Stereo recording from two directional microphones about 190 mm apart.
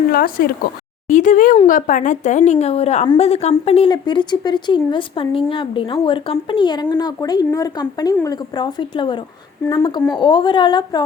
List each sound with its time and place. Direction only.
0.1 s speech: 50° left (ahead or behind)
1.0 s a woman's voice: 40° left (ahead or behind); by 11.0 s 25° left (ahead or behind)